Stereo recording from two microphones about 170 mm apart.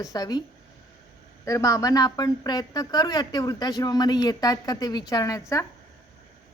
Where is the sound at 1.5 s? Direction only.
20° left (ahead or behind).